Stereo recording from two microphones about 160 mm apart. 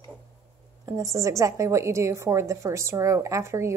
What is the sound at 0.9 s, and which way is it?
A woman's voice, 20° right (ahead or behind).